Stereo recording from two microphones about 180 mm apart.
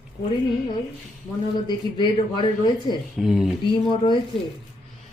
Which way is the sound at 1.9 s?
25° left (ahead or behind).